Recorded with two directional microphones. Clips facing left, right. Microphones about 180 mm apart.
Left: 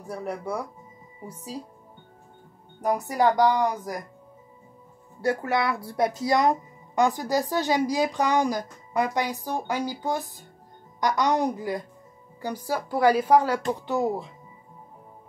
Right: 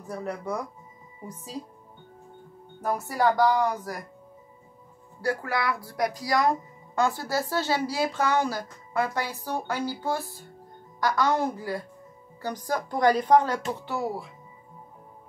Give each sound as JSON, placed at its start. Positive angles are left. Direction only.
{"t": 0.1, "sound": "speech", "side_deg": 10}
{"t": 2.8, "sound": "speech", "side_deg": 15}
{"t": 5.2, "sound": "a woman's voice", "side_deg": 25}